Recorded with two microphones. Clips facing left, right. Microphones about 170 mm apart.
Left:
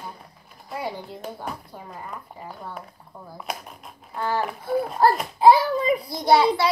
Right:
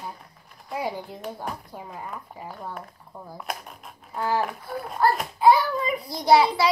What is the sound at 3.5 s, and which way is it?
Speech, centre (ahead or behind).